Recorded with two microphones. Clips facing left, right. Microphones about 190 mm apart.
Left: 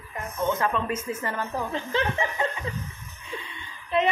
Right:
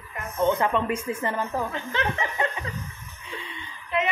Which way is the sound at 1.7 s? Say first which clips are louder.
Left 2 dB; 30° left (ahead or behind).